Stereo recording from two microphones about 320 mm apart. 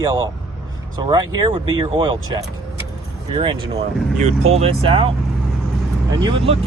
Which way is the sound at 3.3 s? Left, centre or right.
Centre.